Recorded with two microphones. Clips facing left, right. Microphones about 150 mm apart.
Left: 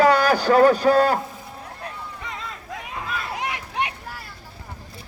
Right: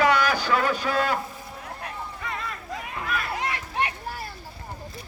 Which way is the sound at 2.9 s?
20° left (ahead or behind).